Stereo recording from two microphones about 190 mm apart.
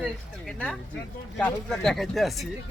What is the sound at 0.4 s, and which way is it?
Speech, 5° left (ahead or behind).